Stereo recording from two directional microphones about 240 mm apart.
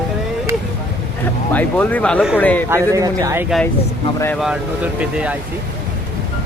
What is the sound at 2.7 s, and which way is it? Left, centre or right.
Speech, centre.